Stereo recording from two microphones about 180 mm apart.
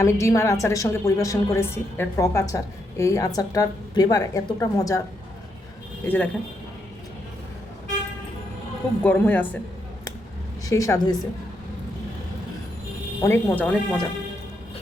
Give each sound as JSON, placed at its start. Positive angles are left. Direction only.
{"t": 0.0, "sound": "a woman's voice", "side_deg": 15}
{"t": 6.1, "sound": "a woman's voice", "side_deg": 10}
{"t": 9.0, "sound": "a woman's voice", "side_deg": 10}
{"t": 10.7, "sound": "a woman's voice", "side_deg": 20}
{"t": 13.2, "sound": "a woman's voice", "side_deg": 10}